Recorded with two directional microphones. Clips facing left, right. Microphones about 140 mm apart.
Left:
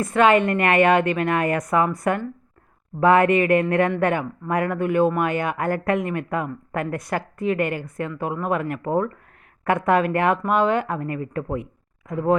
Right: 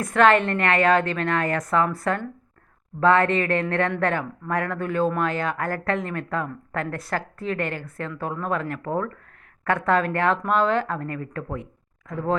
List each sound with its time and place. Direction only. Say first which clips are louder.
0.0 s speech: left 1 dB; 10° left (ahead or behind)